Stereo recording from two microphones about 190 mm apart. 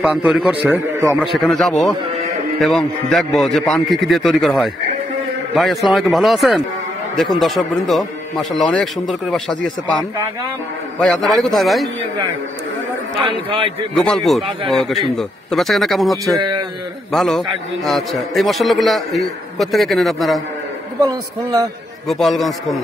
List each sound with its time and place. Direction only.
0.0 s a man's voice: 5° right (ahead or behind)
13.3 s a man's voice: 25° right (ahead or behind)
13.9 s a man's voice: centre (ahead or behind)
16.3 s a man's voice: 25° right (ahead or behind)
17.1 s a man's voice: centre (ahead or behind)
21.0 s a man's voice: 20° right (ahead or behind)
22.0 s a man's voice: centre (ahead or behind)